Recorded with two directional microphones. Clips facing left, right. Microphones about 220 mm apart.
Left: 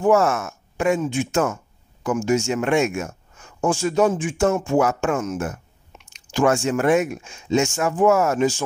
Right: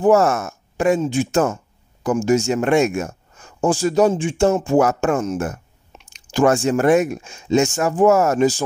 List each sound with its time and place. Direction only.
0.0 s speech: 40° right (ahead or behind)
4.1 s speech: 25° right (ahead or behind)
4.7 s speech: 40° right (ahead or behind)